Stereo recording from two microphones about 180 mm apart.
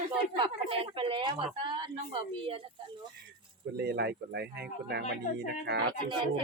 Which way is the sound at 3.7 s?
65° right (ahead or behind).